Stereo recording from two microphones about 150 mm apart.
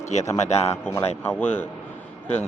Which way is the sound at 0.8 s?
15° left (ahead or behind).